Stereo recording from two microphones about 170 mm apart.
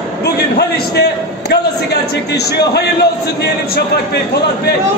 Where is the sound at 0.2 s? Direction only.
75° left (ahead or behind).